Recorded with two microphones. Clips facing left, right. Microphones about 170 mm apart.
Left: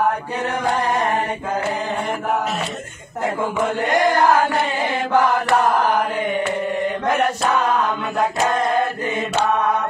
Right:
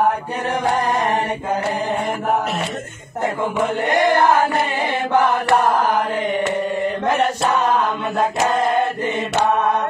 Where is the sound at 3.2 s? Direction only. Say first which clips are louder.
Right 1 dB; 25° right (ahead or behind).